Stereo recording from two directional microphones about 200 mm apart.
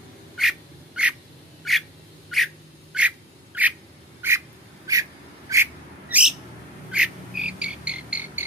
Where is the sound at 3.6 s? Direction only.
5° right (ahead or behind).